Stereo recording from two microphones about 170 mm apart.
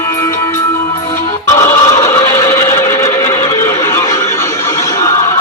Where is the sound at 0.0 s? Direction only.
20° left (ahead or behind).